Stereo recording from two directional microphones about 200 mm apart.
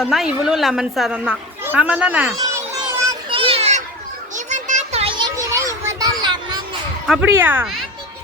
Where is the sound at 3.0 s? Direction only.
20° right (ahead or behind).